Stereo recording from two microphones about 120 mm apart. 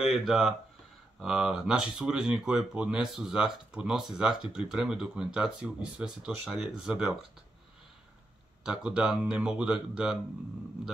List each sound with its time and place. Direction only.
0.0 s speech: centre (ahead or behind)
8.6 s speech: 10° right (ahead or behind)